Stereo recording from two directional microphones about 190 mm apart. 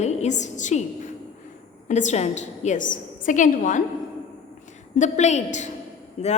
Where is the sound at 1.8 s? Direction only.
40° left (ahead or behind).